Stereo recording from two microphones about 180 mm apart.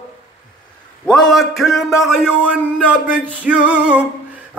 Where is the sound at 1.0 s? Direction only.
5° left (ahead or behind).